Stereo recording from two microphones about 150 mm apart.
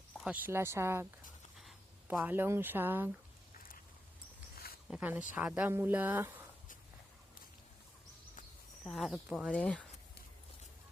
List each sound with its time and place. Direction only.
0.3 s speech: 10° right (ahead or behind)
2.0 s speech: 10° right (ahead or behind)
4.5 s a sound: 90° left
4.9 s speech: 10° right (ahead or behind)
8.8 s speech: centre (ahead or behind)